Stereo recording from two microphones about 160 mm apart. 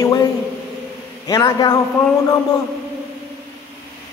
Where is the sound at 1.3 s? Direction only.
25° left (ahead or behind).